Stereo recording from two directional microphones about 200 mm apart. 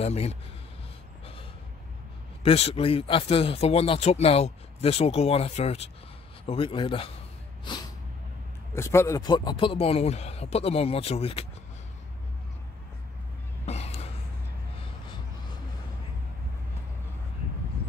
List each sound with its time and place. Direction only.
0.0 s speech: 30° left (ahead or behind)
2.4 s speech: 30° left (ahead or behind)
8.7 s speech: 15° left (ahead or behind); by 11.4 s 30° left (ahead or behind)
13.7 s a sound: 30° left (ahead or behind)